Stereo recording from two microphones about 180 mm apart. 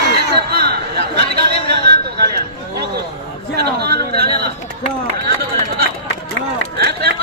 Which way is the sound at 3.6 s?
60° right (ahead or behind).